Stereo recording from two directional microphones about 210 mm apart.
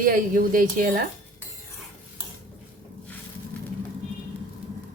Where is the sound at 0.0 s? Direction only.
40° right (ahead or behind).